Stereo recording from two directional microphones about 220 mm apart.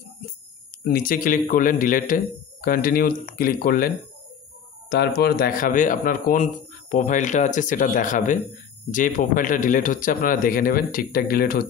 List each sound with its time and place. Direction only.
0.8 s speech: 40° left (ahead or behind)